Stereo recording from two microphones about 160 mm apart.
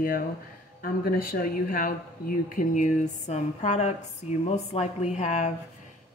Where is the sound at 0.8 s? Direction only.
65° left (ahead or behind); by 5.5 s 45° left (ahead or behind).